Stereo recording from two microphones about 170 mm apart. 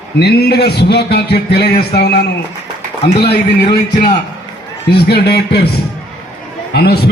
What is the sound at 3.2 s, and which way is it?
Speech, 75° left (ahead or behind).